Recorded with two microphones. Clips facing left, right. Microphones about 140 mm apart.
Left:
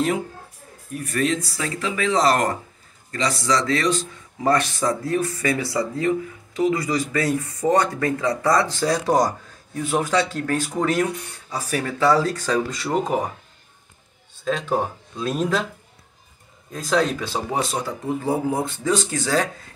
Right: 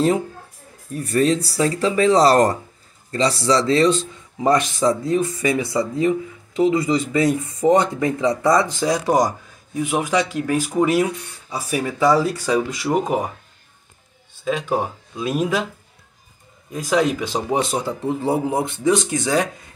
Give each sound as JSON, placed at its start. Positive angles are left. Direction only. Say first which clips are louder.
{"t": 0.9, "sound": "speech", "louder": "right 5 dB", "side_deg": -30}
{"t": 14.4, "sound": "speech", "louder": "right 1 dB", "side_deg": -10}
{"t": 16.7, "sound": "speech", "louder": "right 2 dB", "side_deg": -10}